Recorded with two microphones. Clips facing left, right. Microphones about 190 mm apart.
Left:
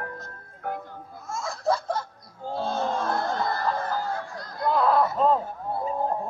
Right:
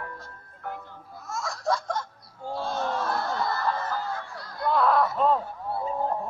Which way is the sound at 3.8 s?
40° left (ahead or behind).